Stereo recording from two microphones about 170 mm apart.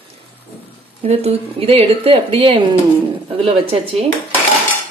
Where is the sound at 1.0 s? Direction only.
35° right (ahead or behind).